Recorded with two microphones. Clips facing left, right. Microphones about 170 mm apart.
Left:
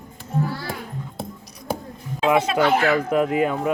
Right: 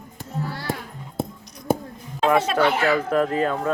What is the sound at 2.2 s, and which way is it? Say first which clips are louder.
Speech: even; 5° left (ahead or behind).